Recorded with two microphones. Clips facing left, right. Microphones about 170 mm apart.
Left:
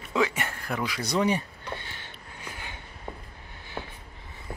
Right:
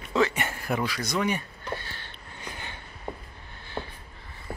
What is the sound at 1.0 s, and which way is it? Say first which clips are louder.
Speech: left 2 dB; 30° left (ahead or behind).